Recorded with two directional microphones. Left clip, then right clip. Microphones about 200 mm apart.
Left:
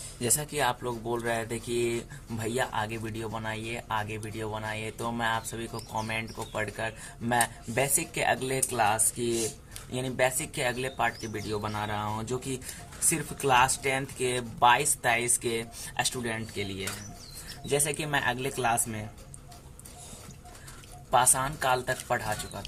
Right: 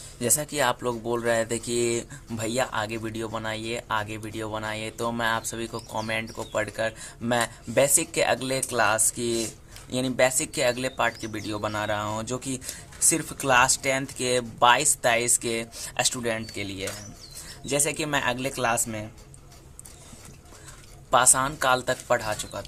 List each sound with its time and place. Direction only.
0.2 s speech: 45° right (ahead or behind)
21.1 s speech: 55° right (ahead or behind)